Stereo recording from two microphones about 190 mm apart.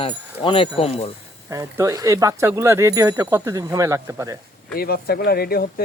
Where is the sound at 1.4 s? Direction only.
15° right (ahead or behind).